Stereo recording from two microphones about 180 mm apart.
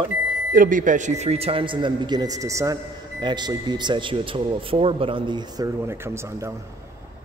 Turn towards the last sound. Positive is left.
turn(degrees=-15)  # may be behind; listen again after turning